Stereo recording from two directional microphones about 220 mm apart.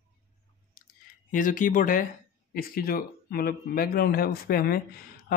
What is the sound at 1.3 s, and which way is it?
Speech, 40° left (ahead or behind).